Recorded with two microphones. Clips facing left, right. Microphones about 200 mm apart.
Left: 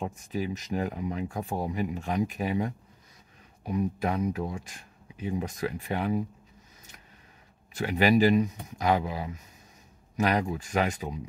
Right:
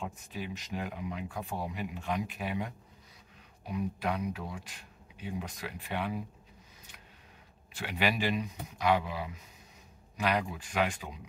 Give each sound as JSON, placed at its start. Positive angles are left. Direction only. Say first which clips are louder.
{"t": 0.0, "sound": "speech", "louder": "left 7 dB", "side_deg": 45}
{"t": 7.7, "sound": "speech", "louder": "left 9 dB", "side_deg": 45}